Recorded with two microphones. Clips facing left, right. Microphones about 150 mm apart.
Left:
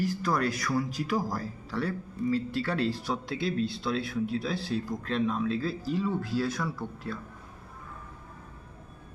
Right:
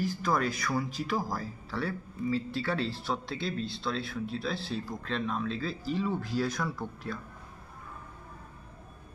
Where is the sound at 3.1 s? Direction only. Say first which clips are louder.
Left 3 dB; 10° left (ahead or behind).